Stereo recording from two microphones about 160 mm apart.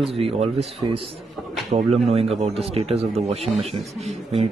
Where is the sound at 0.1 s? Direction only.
35° right (ahead or behind).